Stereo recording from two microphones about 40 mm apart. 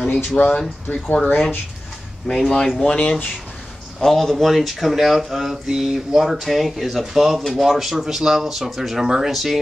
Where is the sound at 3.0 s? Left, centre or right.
Left.